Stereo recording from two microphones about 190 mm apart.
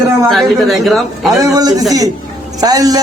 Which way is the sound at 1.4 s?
20° right (ahead or behind).